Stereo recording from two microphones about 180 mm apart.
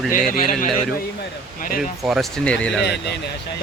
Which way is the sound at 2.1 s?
Centre (ahead or behind).